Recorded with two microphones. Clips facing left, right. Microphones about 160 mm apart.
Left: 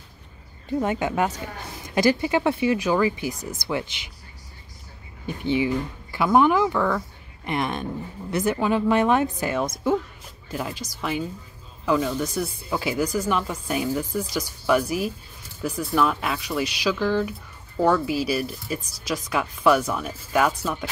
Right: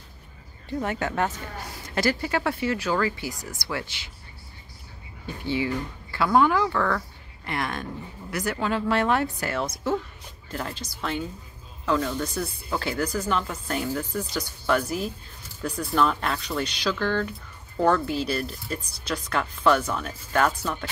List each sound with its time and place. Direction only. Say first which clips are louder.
0.7 s speech: left 4 dB; 15° left (ahead or behind)
5.2 s speech: left 4 dB; 20° left (ahead or behind)